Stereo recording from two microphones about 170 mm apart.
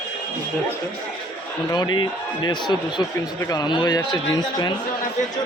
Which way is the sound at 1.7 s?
25° left (ahead or behind).